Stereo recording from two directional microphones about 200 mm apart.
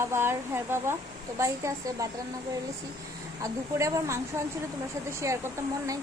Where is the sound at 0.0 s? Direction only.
10° right (ahead or behind).